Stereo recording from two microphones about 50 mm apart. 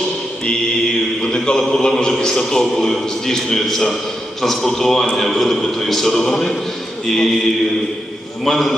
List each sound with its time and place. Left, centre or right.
1.2 s a man's voice: centre